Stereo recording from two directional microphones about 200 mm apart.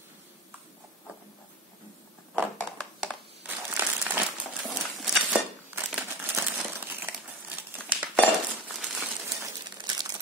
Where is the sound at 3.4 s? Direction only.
10° right (ahead or behind).